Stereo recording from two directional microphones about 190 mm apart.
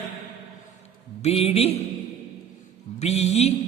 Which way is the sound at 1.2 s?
30° left (ahead or behind).